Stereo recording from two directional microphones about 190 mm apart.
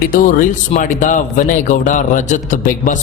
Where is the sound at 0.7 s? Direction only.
40° left (ahead or behind).